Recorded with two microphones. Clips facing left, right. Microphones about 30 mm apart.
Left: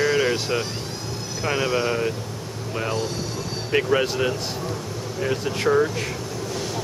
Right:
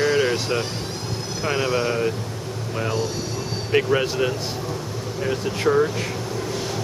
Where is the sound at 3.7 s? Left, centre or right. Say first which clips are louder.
Right 1 dB; centre.